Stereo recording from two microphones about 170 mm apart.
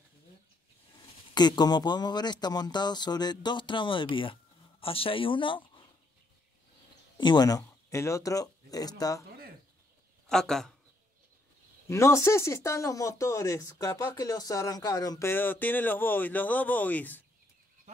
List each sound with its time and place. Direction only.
1.3 s speech: 25° left (ahead or behind)
7.2 s speech: 25° left (ahead or behind)
10.2 s speech: 5° left (ahead or behind)
11.9 s speech: 15° left (ahead or behind)